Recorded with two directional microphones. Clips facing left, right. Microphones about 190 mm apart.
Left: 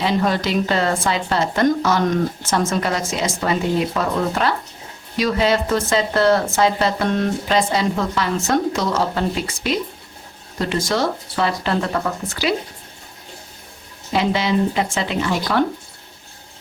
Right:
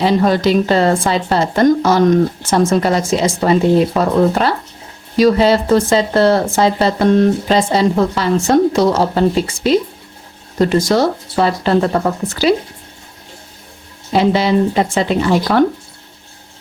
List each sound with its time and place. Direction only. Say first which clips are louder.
0.0 s speech: right 7 dB; 35° right (ahead or behind)
14.1 s speech: right 6 dB; 35° right (ahead or behind)